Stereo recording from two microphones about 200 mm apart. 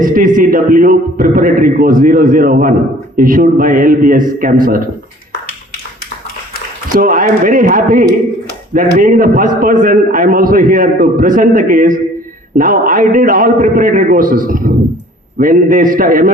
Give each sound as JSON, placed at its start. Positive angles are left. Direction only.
{"t": 0.0, "sound": "a man's voice", "side_deg": -45}
{"t": 6.9, "sound": "a man's voice", "side_deg": -45}